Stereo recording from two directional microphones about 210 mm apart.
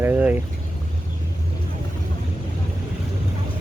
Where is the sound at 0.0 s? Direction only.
10° right (ahead or behind).